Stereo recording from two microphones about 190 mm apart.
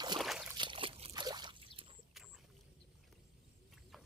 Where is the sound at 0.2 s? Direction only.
Centre (ahead or behind).